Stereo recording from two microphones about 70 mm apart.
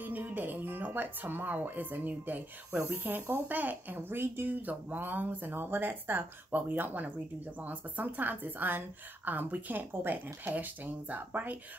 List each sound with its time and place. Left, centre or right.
0.0 s speech: right